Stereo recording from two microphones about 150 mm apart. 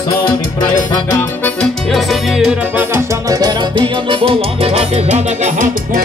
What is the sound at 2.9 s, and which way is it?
Music, 20° right (ahead or behind).